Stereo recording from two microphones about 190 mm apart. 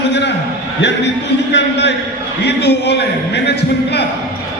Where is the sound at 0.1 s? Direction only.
65° left (ahead or behind).